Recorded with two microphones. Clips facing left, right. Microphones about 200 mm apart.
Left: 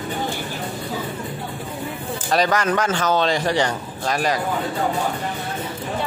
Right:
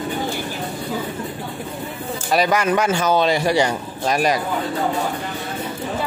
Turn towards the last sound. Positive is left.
turn(degrees=-15)  # may be behind; listen again after turning